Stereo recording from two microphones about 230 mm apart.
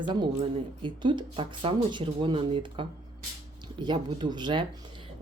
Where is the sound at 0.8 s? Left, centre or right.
Right.